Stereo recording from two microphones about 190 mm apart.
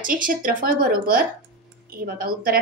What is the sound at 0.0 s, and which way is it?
A woman's voice, 45° right (ahead or behind).